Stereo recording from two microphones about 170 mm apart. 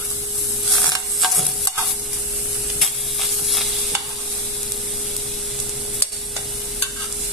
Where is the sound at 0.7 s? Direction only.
Centre (ahead or behind).